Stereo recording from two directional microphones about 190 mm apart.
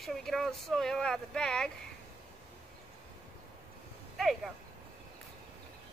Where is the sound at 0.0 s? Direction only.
Centre (ahead or behind).